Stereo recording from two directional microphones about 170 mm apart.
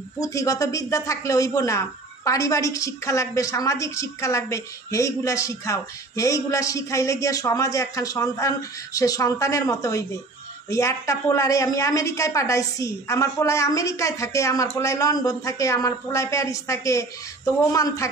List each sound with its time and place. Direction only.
0.2 s speech: 20° left (ahead or behind)